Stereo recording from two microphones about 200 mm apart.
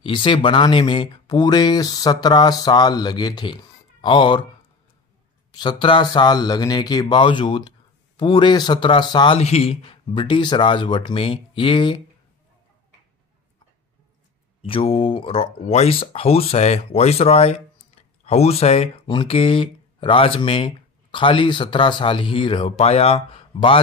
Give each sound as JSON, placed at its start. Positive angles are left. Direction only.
{"t": 0.0, "sound": "speech", "side_deg": 25}
{"t": 5.5, "sound": "speech", "side_deg": 20}
{"t": 14.6, "sound": "speech", "side_deg": 30}